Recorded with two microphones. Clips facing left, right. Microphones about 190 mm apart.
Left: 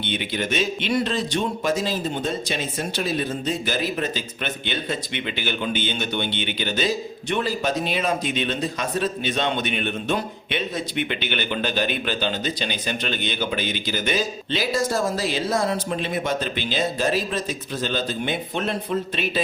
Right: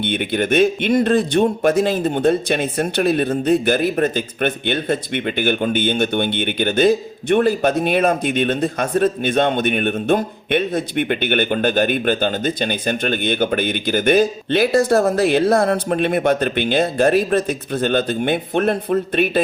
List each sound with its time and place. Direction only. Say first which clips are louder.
0.0 s speech: right 7 dB; 55° right (ahead or behind)